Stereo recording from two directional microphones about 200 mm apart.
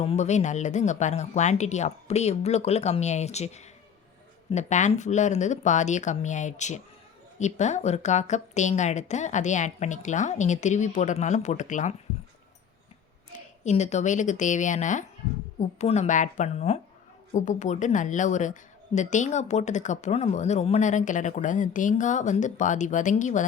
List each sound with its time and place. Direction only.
0.0 s a woman's voice: 30° left (ahead or behind)
13.7 s a woman's voice: 35° left (ahead or behind)